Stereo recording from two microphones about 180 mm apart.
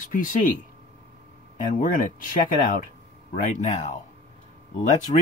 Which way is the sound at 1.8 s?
50° left (ahead or behind).